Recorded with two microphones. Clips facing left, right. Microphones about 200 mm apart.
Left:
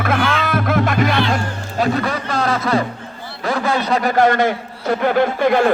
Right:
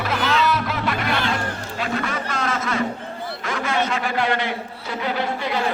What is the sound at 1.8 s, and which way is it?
A man's voice, 35° left (ahead or behind).